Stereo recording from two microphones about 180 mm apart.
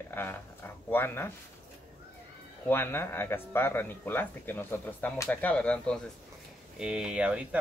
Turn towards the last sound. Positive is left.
turn(degrees=-5)  # may be behind; listen again after turning